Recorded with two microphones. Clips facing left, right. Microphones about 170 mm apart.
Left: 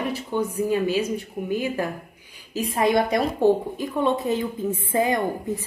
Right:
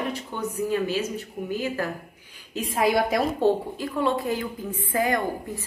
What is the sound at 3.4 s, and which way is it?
A woman's voice, 20° left (ahead or behind).